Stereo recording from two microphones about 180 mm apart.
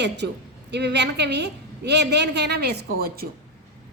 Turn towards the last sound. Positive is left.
turn(degrees=-60)  # may be behind; listen again after turning